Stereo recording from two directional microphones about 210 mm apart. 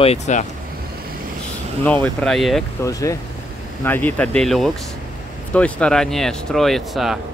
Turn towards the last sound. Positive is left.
turn(degrees=0)  # may be behind; listen again after turning